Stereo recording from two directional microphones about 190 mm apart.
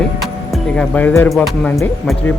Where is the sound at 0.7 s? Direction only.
5° left (ahead or behind).